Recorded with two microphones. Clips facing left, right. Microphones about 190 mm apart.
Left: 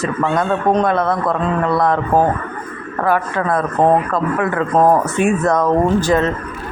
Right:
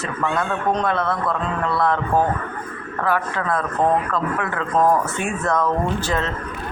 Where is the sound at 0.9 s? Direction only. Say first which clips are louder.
Left 5 dB; 45° left (ahead or behind).